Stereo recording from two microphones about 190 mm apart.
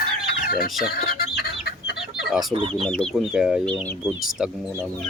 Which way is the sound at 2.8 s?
5° left (ahead or behind).